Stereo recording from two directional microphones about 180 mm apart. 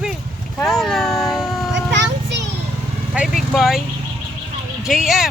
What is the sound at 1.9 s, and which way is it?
Music, 80° right.